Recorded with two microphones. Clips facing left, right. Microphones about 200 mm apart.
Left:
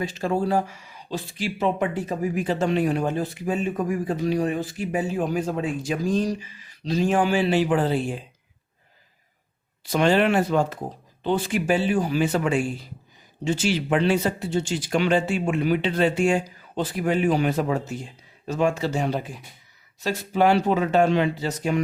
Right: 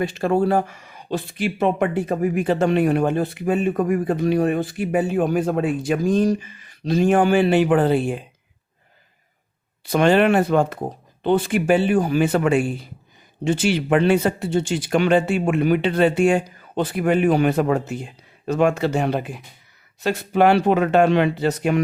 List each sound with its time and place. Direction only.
0.0 s speech: 60° right (ahead or behind)
9.8 s speech: 55° right (ahead or behind)